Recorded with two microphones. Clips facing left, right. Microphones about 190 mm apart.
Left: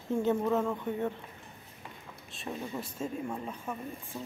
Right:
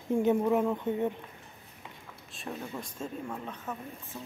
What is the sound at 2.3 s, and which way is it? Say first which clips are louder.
Speech: left 1 dB; centre (ahead or behind).